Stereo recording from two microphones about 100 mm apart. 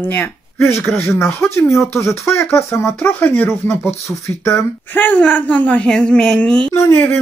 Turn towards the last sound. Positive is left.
turn(degrees=30)  # may be behind; listen again after turning